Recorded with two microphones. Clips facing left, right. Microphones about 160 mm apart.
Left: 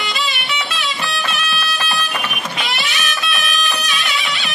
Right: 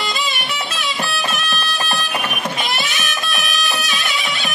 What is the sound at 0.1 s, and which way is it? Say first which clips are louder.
Music: even; 45° right (ahead or behind).